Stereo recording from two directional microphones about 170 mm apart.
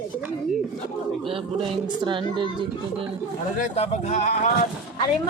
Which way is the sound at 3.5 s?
40° left (ahead or behind).